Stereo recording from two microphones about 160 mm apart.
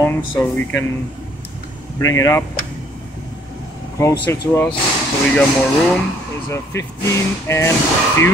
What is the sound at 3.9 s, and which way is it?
Speech, 20° left (ahead or behind).